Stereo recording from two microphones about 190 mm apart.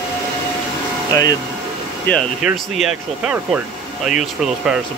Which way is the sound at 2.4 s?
5° right (ahead or behind).